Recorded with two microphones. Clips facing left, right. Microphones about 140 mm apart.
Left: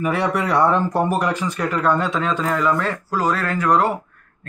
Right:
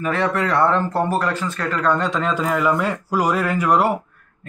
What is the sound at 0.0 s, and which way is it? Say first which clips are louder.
Speech: even; 10° left (ahead or behind).